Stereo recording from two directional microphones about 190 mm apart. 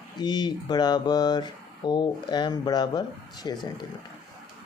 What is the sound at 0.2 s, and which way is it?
Speech, 25° left (ahead or behind).